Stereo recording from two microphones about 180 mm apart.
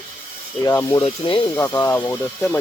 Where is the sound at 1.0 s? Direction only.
30° left (ahead or behind).